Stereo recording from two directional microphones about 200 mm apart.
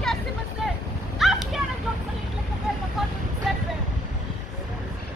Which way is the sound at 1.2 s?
Centre (ahead or behind).